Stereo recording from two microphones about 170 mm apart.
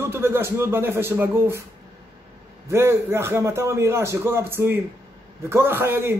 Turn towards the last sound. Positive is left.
turn(degrees=-15)  # may be behind; listen again after turning